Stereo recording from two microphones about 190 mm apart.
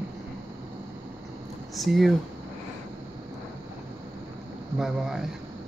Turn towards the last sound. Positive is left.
turn(degrees=0)  # may be behind; listen again after turning